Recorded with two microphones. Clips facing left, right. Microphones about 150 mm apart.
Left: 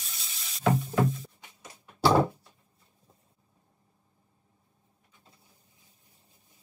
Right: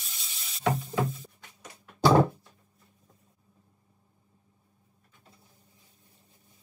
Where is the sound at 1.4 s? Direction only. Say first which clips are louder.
Right 1 dB; 10° left (ahead or behind).